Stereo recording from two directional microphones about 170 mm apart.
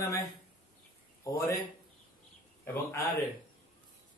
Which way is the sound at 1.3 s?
20° left (ahead or behind).